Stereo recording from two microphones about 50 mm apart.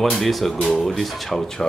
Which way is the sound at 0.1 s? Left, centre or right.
Centre.